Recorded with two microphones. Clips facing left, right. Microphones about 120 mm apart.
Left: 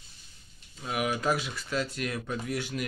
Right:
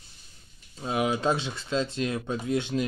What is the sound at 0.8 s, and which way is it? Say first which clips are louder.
Speech: right 4 dB; 25° right (ahead or behind).